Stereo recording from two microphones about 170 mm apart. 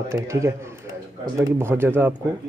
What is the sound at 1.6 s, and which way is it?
Speech, 15° right (ahead or behind).